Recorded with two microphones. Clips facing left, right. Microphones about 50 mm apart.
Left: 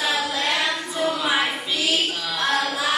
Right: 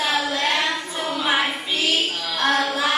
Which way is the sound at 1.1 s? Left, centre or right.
Right.